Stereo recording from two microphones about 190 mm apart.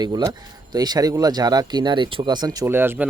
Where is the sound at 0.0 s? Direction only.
20° right (ahead or behind).